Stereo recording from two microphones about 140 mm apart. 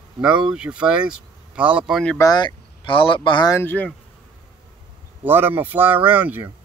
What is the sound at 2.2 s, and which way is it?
Speech, 30° left (ahead or behind).